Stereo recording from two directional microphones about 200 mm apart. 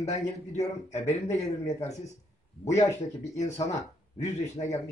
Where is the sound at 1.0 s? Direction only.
15° left (ahead or behind).